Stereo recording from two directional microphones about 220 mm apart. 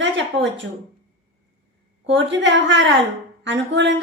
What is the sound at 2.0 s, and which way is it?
A woman's voice, 55° right (ahead or behind).